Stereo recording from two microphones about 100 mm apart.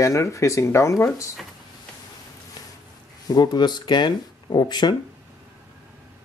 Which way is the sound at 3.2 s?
40° left (ahead or behind).